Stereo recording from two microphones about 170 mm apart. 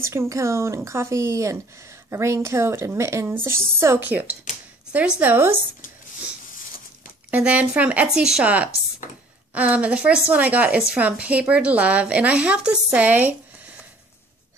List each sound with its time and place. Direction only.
0.0 s speech: 15° right (ahead or behind)
7.2 s speech: 10° right (ahead or behind)